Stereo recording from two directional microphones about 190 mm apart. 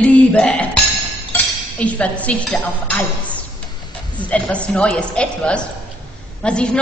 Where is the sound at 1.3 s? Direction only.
10° left (ahead or behind).